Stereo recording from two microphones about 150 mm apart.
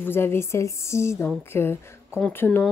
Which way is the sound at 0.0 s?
15° left (ahead or behind).